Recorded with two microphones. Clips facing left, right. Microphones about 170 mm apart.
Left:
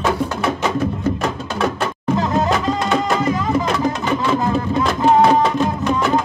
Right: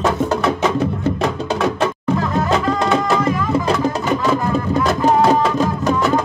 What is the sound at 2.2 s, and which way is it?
Music, 20° left (ahead or behind).